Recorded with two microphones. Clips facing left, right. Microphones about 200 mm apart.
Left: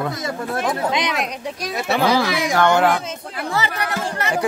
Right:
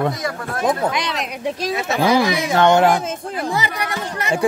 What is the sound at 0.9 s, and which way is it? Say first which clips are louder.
Speech: left 2 dB; 20° left (ahead or behind).